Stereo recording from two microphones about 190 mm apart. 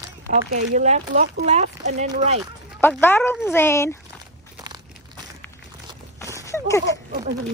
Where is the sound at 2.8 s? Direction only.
10° left (ahead or behind).